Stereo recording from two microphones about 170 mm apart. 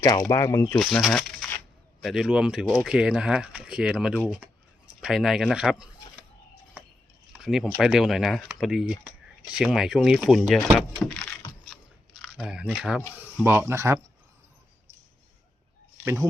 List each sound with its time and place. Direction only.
0.0 s speech: 20° left (ahead or behind)
1.0 s shuffling cards: 5° left (ahead or behind)
2.0 s speech: 5° right (ahead or behind)
7.3 s speech: 5° right (ahead or behind)
11.7 s biting: centre (ahead or behind)
12.6 s speech: 5° left (ahead or behind)
13.4 s speech: 10° right (ahead or behind)
16.0 s speech: 15° right (ahead or behind)